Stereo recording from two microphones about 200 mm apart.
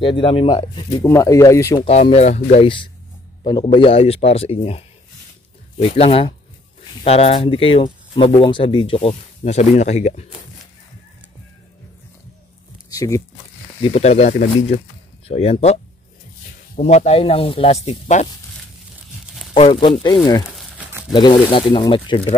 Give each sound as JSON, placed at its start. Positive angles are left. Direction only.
{"t": 0.0, "sound": "speech", "side_deg": 25}
{"t": 1.9, "sound": "speech", "side_deg": 30}
{"t": 12.9, "sound": "speech", "side_deg": 15}
{"t": 13.8, "sound": "speech", "side_deg": 30}
{"t": 19.5, "sound": "speech", "side_deg": 25}
{"t": 20.5, "sound": "crumpling", "side_deg": -5}
{"t": 21.1, "sound": "speech", "side_deg": 25}